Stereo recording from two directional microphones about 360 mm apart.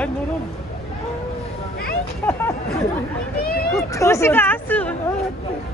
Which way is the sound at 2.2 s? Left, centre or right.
Centre.